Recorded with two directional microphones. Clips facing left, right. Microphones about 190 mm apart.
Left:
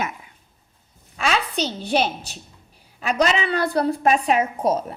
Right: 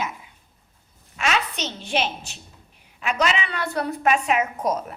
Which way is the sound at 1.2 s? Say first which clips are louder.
Left 2 dB; 35° left (ahead or behind).